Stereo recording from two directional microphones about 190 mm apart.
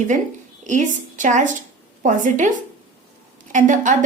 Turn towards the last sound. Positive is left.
turn(degrees=-40)  # may be behind; listen again after turning